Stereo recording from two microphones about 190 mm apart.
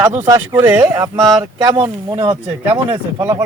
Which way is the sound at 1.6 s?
20° right (ahead or behind).